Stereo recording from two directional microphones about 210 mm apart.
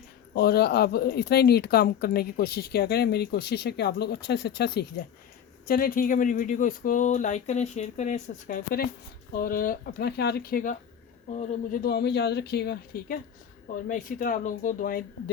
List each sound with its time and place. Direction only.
0.3 s speech: 50° left (ahead or behind)